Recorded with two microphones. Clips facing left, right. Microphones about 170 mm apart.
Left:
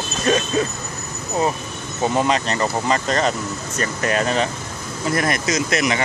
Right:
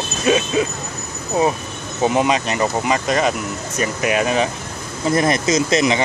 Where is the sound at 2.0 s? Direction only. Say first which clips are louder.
Right 2 dB; 15° right (ahead or behind).